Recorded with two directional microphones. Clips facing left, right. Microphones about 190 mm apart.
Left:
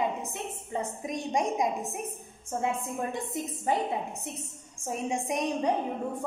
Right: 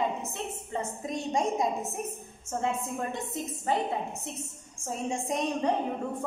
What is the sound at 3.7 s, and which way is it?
A woman's voice, 15° left (ahead or behind).